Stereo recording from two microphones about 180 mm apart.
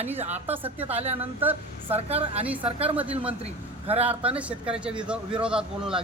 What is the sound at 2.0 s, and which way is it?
Speech, 35° right (ahead or behind).